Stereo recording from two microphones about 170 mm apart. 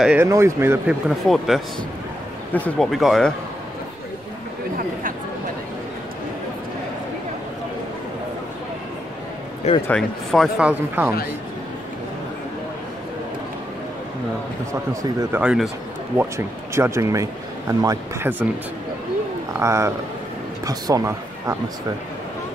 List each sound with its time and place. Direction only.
0.0 s speech: 5° right (ahead or behind)
1.0 s speech: centre (ahead or behind)
9.8 s speech: 5° left (ahead or behind)
10.6 s speech: 10° right (ahead or behind)
14.7 s speech: 15° right (ahead or behind)
15.4 s speech: centre (ahead or behind)
16.2 s speech: 15° right (ahead or behind)
19.6 s speech: 15° right (ahead or behind)